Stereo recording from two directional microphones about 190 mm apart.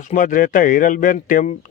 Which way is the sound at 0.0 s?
45° left (ahead or behind).